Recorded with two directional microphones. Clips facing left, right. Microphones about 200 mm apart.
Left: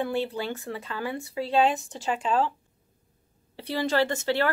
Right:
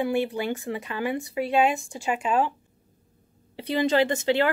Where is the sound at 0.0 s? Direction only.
15° right (ahead or behind).